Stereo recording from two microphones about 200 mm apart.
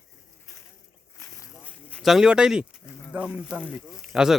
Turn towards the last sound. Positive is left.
turn(degrees=-5)  # may be behind; listen again after turning